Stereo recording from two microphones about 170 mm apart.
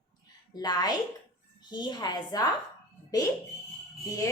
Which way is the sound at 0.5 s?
25° left (ahead or behind).